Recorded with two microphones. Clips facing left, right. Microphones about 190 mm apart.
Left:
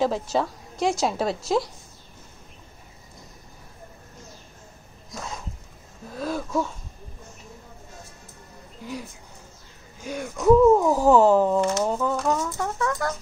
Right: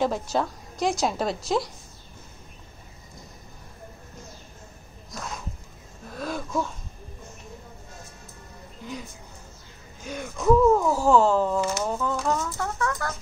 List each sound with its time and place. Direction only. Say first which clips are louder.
0.0 s a woman's voice: left 1 dB; centre (ahead or behind)
5.1 s a sound: left 1 dB; centre (ahead or behind)
10.0 s speech: left 3 dB; 10° left (ahead or behind)
12.3 s chicken: left 2 dB; 20° left (ahead or behind)